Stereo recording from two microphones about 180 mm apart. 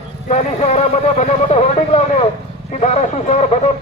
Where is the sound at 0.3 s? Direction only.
40° left (ahead or behind).